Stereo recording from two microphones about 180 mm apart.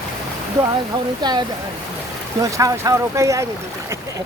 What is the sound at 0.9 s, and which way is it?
Speech, 25° right (ahead or behind).